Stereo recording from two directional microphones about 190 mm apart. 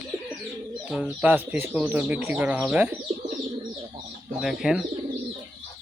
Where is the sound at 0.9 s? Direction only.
5° right (ahead or behind).